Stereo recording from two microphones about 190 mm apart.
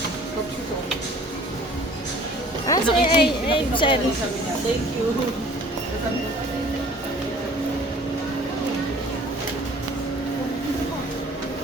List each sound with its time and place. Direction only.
2.6 s a woman's voice: 25° left (ahead or behind)